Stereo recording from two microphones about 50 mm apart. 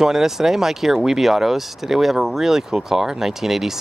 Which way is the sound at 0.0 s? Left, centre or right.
Centre.